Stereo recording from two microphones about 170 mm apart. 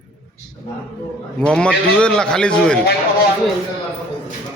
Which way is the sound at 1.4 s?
5° left (ahead or behind).